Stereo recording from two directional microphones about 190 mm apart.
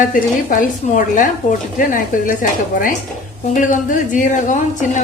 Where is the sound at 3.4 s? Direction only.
45° left (ahead or behind).